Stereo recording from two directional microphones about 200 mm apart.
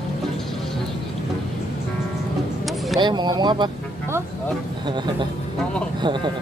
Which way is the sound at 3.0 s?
20° right (ahead or behind).